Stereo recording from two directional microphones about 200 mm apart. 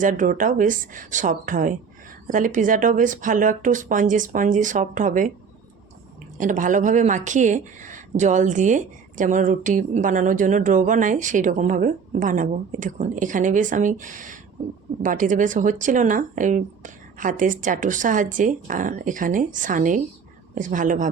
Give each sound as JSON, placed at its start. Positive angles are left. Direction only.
{"t": 0.0, "sound": "speech", "side_deg": -40}
{"t": 6.3, "sound": "speech", "side_deg": -40}